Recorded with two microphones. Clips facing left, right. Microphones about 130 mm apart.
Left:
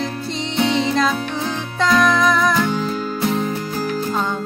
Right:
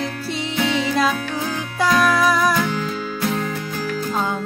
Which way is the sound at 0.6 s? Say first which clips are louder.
Left 3 dB; 30° left (ahead or behind).